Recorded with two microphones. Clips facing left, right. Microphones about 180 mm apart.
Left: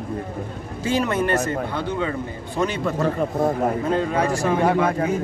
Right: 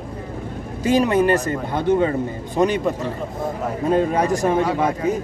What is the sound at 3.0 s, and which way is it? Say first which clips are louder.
Speech: left 5 dB; 55° left (ahead or behind).